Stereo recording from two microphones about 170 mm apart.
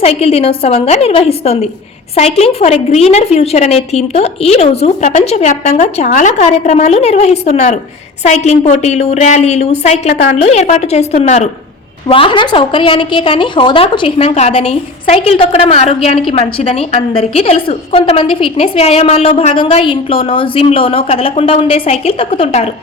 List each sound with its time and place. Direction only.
0.0 s a woman's voice: 35° left (ahead or behind)